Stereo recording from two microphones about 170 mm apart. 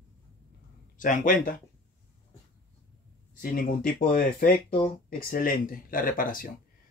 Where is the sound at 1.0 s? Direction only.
50° left (ahead or behind).